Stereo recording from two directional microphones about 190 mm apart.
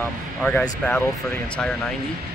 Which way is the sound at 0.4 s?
5° left (ahead or behind).